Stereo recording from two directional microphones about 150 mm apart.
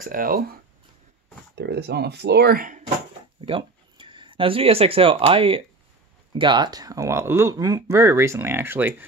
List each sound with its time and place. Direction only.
0.0 s speech: 70° right (ahead or behind)
1.7 s speech: 90° right; by 2.8 s 70° right (ahead or behind)
3.3 s speech: 35° right (ahead or behind); by 8.9 s 15° right (ahead or behind)